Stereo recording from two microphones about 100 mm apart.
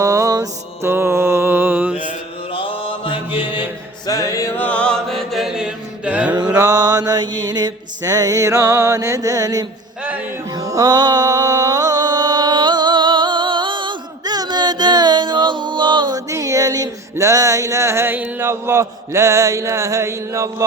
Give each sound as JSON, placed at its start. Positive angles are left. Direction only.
{"t": 0.0, "sound": "mantra", "side_deg": -30}
{"t": 0.9, "sound": "mantra", "side_deg": -25}
{"t": 2.5, "sound": "mantra", "side_deg": 65}
{"t": 4.0, "sound": "music", "side_deg": 35}
{"t": 4.6, "sound": "music", "side_deg": 10}
{"t": 6.5, "sound": "mantra", "side_deg": -30}
{"t": 10.5, "sound": "music", "side_deg": -35}
{"t": 16.3, "sound": "a sound", "side_deg": -35}